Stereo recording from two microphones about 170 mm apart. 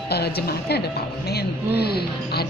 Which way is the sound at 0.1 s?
70° left (ahead or behind).